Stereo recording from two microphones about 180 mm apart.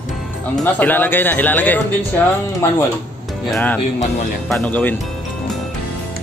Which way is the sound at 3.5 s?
10° left (ahead or behind).